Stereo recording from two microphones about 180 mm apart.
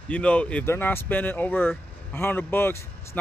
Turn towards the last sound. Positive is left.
turn(degrees=15)  # may be behind; listen again after turning